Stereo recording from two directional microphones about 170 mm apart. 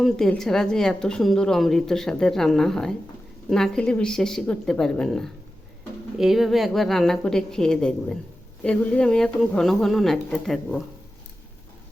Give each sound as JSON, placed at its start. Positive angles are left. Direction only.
{"t": 0.0, "sound": "a woman's voice", "side_deg": 0}